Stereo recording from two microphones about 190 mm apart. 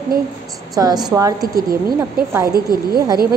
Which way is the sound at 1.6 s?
50° right (ahead or behind).